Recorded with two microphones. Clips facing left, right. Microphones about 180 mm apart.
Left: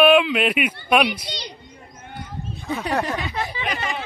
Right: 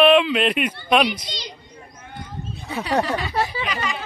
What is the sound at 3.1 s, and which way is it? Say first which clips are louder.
Speech: right 3 dB; 35° right (ahead or behind).